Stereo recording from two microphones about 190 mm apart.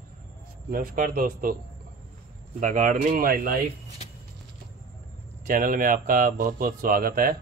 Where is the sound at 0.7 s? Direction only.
50° right (ahead or behind).